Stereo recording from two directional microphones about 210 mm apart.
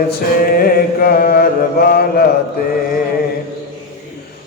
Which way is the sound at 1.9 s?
45° left (ahead or behind).